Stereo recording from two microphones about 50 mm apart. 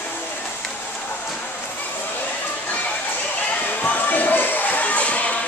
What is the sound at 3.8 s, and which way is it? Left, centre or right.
Music, left.